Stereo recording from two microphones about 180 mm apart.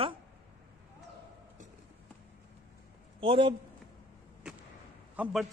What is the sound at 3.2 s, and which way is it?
Speech, 30° right (ahead or behind).